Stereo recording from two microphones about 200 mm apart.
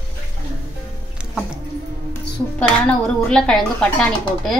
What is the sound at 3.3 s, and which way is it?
Speech, 5° left (ahead or behind).